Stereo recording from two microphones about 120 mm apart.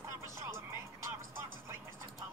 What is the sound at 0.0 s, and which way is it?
Music, 25° right (ahead or behind).